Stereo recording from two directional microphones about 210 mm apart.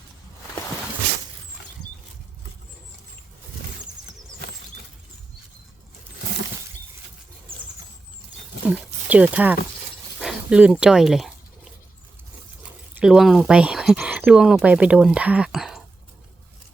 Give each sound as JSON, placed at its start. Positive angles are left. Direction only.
{"t": 8.7, "sound": "speech", "side_deg": -5}
{"t": 12.9, "sound": "speech", "side_deg": -5}